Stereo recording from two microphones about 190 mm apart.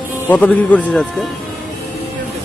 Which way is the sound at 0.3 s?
10° left (ahead or behind).